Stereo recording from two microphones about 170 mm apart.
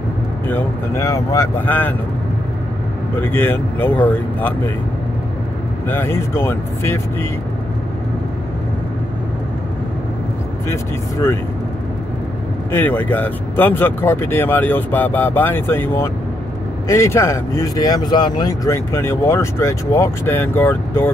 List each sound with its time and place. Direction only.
0.5 s speech: 15° left (ahead or behind)
3.2 s speech: 10° left (ahead or behind)
5.9 s speech: 15° left (ahead or behind)
10.7 s speech: 15° left (ahead or behind)
12.7 s speech: 10° left (ahead or behind)